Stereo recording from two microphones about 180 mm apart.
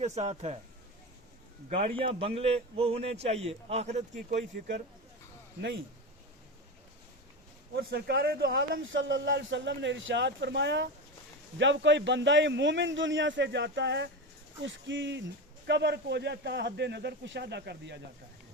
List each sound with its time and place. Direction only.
0.0 s a man's voice: 40° right (ahead or behind)
2.0 s a man's voice: 30° right (ahead or behind)
7.8 s a man's voice: 60° right (ahead or behind); by 14.1 s 75° right (ahead or behind)
14.6 s speech: 90° right
15.6 s speech: 70° right (ahead or behind)